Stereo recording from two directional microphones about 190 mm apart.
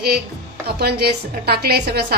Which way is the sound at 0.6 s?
55° right (ahead or behind).